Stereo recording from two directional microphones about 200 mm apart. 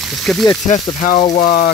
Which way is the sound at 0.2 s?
Centre (ahead or behind).